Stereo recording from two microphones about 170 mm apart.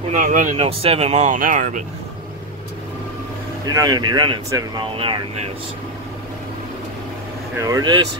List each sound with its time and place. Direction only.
0.1 s speech: 50° right (ahead or behind)
0.7 s speech: 35° right (ahead or behind)
3.6 s speech: 20° right (ahead or behind)
7.5 s speech: 20° right (ahead or behind)